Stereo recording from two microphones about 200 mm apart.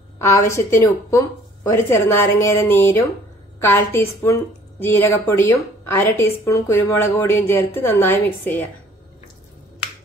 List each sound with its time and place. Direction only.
0.2 s a woman's voice: 15° left (ahead or behind)